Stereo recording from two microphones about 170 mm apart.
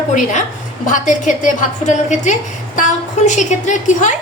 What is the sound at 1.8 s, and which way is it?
A woman's voice, 45° left (ahead or behind).